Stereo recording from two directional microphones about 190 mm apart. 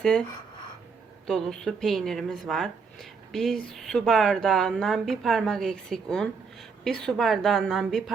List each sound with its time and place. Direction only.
0.0 s speech: 5° left (ahead or behind)
1.3 s speech: centre (ahead or behind)